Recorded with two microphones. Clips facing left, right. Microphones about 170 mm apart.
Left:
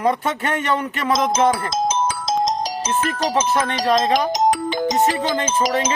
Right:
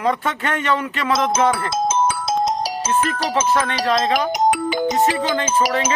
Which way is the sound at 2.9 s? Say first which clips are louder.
Right 3 dB; 35° left (ahead or behind).